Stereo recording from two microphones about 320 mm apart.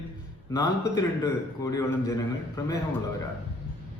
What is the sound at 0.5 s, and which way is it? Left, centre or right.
A man's voice, centre.